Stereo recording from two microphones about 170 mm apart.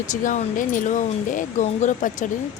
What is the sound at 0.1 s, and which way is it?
Speech, 50° left (ahead or behind).